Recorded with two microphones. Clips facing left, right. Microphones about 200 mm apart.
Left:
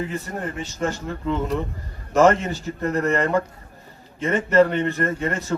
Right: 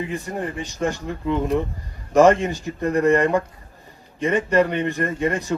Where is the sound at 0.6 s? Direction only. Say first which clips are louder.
Right 1 dB; 15° right (ahead or behind).